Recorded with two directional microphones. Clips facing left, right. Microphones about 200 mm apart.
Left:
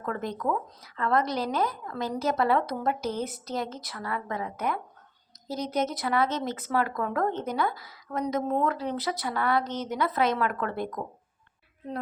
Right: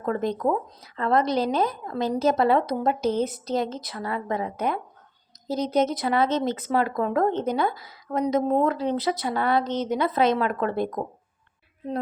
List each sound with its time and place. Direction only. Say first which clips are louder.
0.0 s speech: right 6 dB; 25° right (ahead or behind)